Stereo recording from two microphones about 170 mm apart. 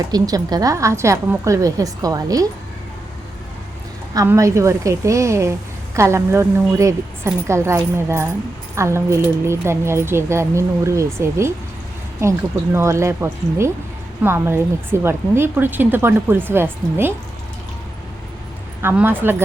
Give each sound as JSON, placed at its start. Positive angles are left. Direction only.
{"t": 0.1, "sound": "a woman's voice", "side_deg": -20}
{"t": 4.1, "sound": "a woman's voice", "side_deg": -20}
{"t": 18.8, "sound": "a woman's voice", "side_deg": -15}